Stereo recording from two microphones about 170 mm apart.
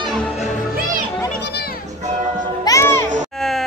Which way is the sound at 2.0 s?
45° right (ahead or behind).